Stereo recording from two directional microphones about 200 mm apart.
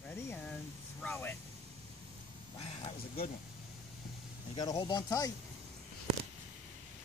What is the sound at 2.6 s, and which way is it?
Speech, 30° left (ahead or behind).